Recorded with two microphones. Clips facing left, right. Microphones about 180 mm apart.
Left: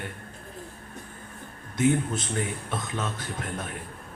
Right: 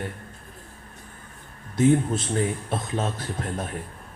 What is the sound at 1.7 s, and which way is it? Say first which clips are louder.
A man's voice: right 4 dB; 35° right (ahead or behind).